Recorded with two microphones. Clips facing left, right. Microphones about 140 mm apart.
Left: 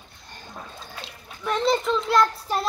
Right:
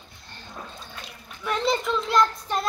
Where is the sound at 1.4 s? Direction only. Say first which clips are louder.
Left 2 dB; centre (ahead or behind).